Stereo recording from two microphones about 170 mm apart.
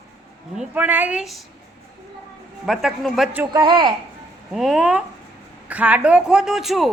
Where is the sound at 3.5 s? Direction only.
25° right (ahead or behind).